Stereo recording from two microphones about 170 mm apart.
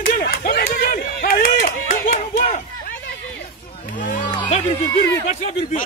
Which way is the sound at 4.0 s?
50° left (ahead or behind).